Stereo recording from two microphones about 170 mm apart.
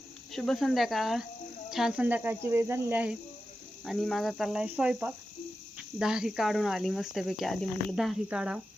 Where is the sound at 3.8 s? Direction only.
Centre (ahead or behind).